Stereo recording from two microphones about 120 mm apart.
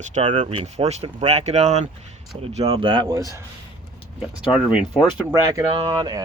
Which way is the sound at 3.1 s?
30° right (ahead or behind).